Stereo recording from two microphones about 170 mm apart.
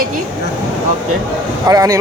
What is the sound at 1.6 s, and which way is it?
Speech, 20° right (ahead or behind).